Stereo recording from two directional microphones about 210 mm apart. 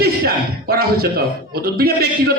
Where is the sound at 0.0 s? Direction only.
45° right (ahead or behind).